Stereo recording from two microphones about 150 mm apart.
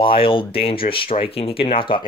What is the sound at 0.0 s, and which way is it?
Speech, 35° left (ahead or behind).